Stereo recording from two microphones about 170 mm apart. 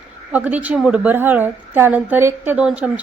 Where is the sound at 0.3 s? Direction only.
10° right (ahead or behind).